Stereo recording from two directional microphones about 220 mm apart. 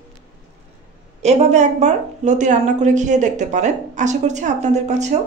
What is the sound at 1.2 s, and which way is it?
A woman's voice, 30° right (ahead or behind).